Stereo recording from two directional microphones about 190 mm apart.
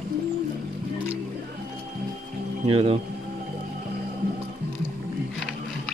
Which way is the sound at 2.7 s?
30° right (ahead or behind).